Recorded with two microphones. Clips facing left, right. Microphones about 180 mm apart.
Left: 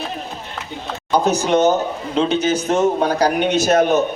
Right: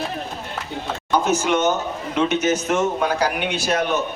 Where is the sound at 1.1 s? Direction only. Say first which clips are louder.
Left 3 dB; 35° left (ahead or behind).